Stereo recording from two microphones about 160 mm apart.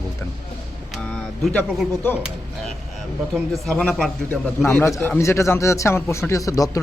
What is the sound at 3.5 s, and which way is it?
A man's voice, 5° left (ahead or behind).